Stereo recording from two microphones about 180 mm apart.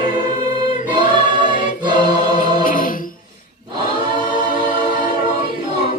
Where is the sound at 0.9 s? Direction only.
25° right (ahead or behind).